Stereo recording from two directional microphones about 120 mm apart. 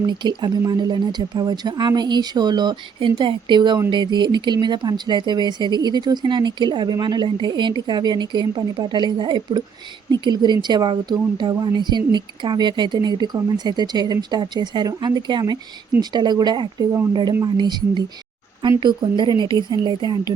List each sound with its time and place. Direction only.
0.0 s speech: 40° right (ahead or behind)